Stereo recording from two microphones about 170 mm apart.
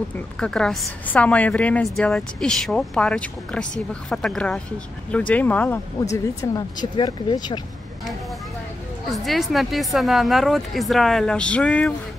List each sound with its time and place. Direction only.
0.4 s a woman's voice: 5° left (ahead or behind)
6.2 s speech: 25° left (ahead or behind)
9.1 s a woman's voice: centre (ahead or behind)